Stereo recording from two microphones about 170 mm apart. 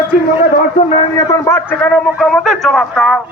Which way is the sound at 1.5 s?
15° left (ahead or behind).